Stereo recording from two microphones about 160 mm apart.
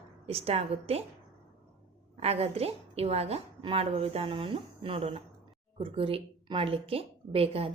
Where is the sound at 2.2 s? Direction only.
40° right (ahead or behind).